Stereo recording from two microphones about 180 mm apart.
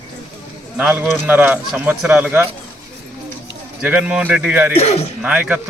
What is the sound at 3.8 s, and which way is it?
Speech, 5° right (ahead or behind).